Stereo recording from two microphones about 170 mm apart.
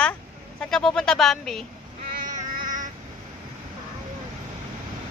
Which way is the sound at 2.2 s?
50° right (ahead or behind).